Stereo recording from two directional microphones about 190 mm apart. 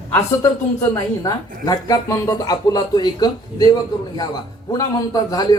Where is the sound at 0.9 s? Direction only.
20° left (ahead or behind).